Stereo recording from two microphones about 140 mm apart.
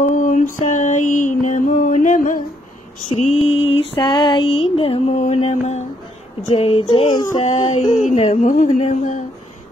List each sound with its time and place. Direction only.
0.0 s mantra: 65° left (ahead or behind)
3.1 s female singing: 50° left (ahead or behind)
6.5 s speech: 45° left (ahead or behind)